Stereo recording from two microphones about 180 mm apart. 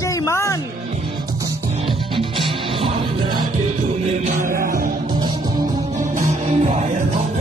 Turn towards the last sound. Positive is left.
turn(degrees=-35)  # may be behind; listen again after turning